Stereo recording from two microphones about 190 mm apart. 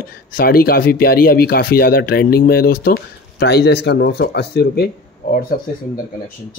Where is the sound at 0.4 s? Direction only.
50° left (ahead or behind).